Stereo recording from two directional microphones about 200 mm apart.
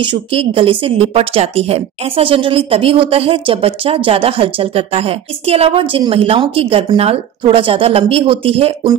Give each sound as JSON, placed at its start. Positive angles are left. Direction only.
{"t": 0.0, "sound": "a woman's voice", "side_deg": -25}